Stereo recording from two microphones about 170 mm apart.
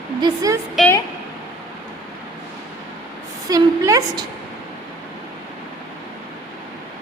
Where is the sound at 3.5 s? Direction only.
20° right (ahead or behind).